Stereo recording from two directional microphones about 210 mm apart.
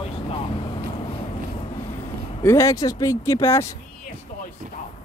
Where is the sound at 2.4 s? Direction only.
15° left (ahead or behind).